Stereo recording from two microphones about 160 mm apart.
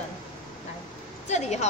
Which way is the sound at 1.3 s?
45° left (ahead or behind).